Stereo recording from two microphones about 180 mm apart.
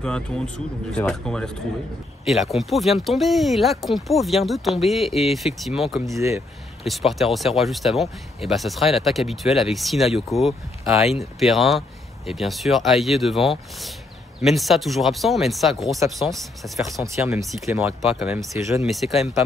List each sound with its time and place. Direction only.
0.9 s speech: 5° left (ahead or behind)
6.0 s speech: 15° right (ahead or behind)
6.8 s speech: centre (ahead or behind)
17.0 s speech: 15° right (ahead or behind)
17.7 s speech: 5° right (ahead or behind)
18.5 s speech: 15° right (ahead or behind)
18.9 s speech: centre (ahead or behind)